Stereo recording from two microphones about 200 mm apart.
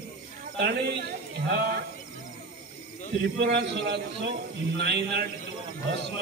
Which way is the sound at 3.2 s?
60° right (ahead or behind).